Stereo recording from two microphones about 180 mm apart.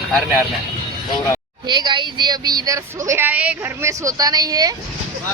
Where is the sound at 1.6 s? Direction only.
25° right (ahead or behind).